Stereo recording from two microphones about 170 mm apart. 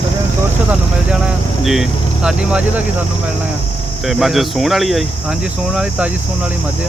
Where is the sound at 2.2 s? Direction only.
5° right (ahead or behind).